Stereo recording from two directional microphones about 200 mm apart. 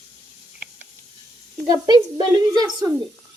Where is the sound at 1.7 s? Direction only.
20° right (ahead or behind).